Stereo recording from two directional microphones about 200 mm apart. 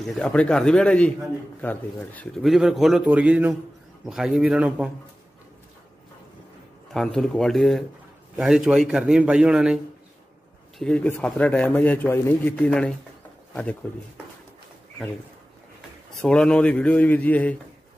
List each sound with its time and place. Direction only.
0.0 s speech: 5° left (ahead or behind)
6.9 s speech: centre (ahead or behind)
10.8 s a man's voice: 5° left (ahead or behind)
16.2 s a man's voice: 5° left (ahead or behind)